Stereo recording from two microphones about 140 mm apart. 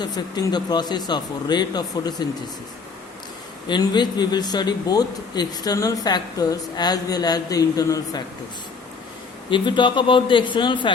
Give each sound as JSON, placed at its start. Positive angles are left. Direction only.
{"t": 0.0, "sound": "speech", "side_deg": 30}
{"t": 3.7, "sound": "speech", "side_deg": 30}
{"t": 9.5, "sound": "speech", "side_deg": 35}